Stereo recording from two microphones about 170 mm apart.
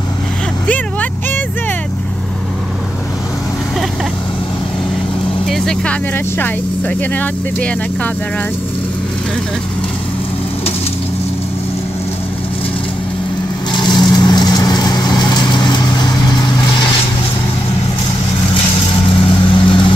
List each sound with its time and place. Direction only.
5.5 s speech: 5° left (ahead or behind)
13.7 s vehicle: 25° left (ahead or behind)
19.2 s vehicle: 30° left (ahead or behind)